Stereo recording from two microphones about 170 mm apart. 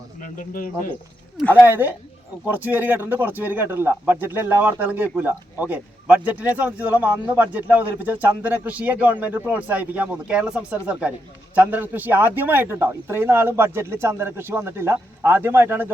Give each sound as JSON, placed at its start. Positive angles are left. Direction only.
{"t": 0.2, "sound": "speech", "side_deg": 55}
{"t": 1.6, "sound": "speech", "side_deg": -10}